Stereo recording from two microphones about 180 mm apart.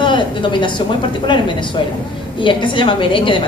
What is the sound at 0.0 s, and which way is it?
A woman's voice, 25° left (ahead or behind).